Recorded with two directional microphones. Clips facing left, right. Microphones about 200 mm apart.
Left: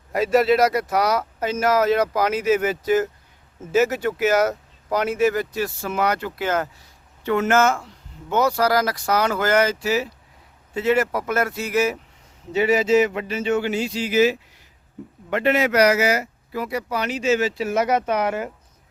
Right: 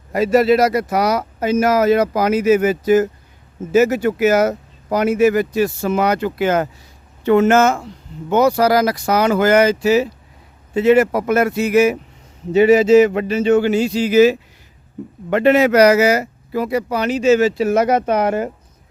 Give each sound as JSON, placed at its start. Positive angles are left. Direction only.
{"t": 0.1, "sound": "speech", "side_deg": 0}